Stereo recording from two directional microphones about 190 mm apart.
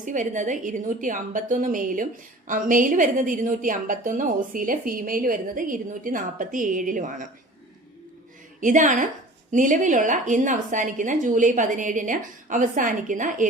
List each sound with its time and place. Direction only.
0.0 s a woman's voice: 40° right (ahead or behind)
8.6 s a woman's voice: 40° right (ahead or behind)